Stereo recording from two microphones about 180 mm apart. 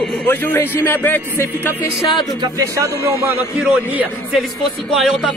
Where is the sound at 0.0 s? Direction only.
10° left (ahead or behind).